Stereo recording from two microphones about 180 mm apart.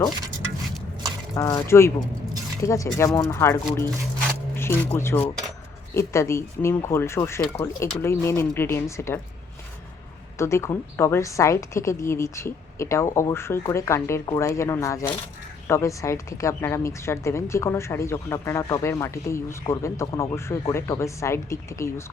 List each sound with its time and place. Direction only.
1.4 s a woman's voice: 20° left (ahead or behind)
10.3 s a woman's voice: 15° left (ahead or behind)